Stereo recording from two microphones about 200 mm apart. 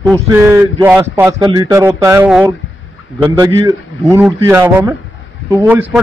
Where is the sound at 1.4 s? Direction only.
20° right (ahead or behind).